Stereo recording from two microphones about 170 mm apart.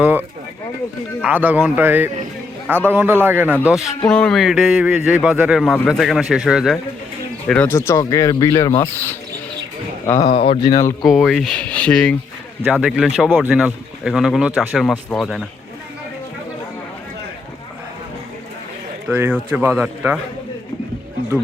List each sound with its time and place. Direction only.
0.0 s speech: 10° right (ahead or behind); by 9.1 s 15° left (ahead or behind)
10.2 s speech: 35° left (ahead or behind)
11.3 s speech: centre (ahead or behind)
12.6 s speech: 5° right (ahead or behind)
19.0 s speech: 10° right (ahead or behind)